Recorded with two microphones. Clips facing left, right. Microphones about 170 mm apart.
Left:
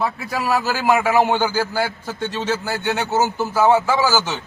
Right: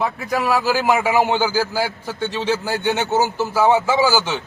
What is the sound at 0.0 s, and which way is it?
A man's voice, 15° right (ahead or behind).